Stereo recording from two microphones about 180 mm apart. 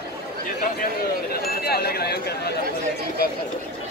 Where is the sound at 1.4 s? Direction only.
60° left (ahead or behind).